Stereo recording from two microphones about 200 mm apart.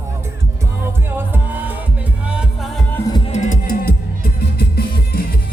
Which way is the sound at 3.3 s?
40° left (ahead or behind).